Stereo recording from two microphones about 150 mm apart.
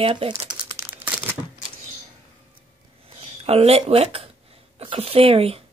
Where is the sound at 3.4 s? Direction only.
40° right (ahead or behind).